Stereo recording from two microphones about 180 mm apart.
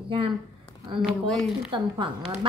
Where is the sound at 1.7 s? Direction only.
25° right (ahead or behind).